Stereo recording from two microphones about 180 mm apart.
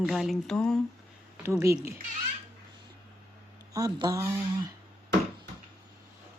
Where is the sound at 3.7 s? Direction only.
20° right (ahead or behind).